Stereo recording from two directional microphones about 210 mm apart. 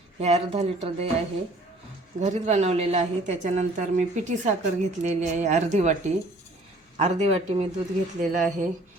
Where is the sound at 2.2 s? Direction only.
35° right (ahead or behind).